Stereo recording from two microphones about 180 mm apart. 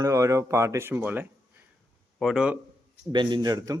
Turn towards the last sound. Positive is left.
turn(degrees=-20)  # may be behind; listen again after turning